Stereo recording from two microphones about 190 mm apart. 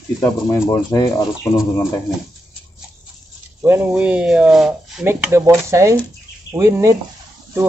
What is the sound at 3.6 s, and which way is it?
Speech, 10° right (ahead or behind).